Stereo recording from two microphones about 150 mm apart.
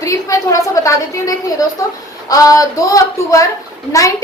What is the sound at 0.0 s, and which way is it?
A woman's voice, 20° left (ahead or behind).